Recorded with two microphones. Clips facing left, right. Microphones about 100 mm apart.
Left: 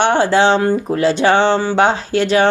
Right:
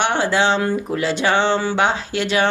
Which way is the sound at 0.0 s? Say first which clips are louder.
Left 5 dB; 35° left (ahead or behind).